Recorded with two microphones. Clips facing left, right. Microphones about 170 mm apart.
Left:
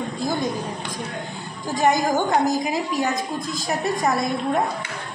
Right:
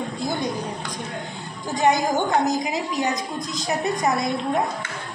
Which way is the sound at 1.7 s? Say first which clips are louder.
Even; 20° right (ahead or behind).